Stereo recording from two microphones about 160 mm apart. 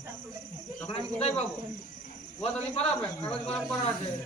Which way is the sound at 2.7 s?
40° left (ahead or behind).